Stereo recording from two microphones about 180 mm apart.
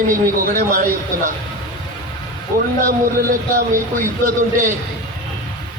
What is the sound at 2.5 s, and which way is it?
A man's voice, 50° right (ahead or behind).